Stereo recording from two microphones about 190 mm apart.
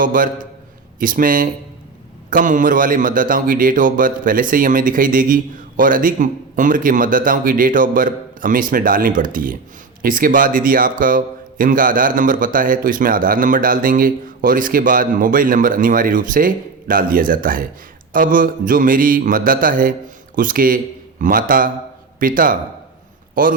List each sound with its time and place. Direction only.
0.0 s a man's voice: 45° right (ahead or behind)